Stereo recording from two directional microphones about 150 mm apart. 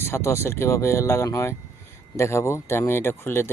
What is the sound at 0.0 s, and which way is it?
Speech, 20° left (ahead or behind).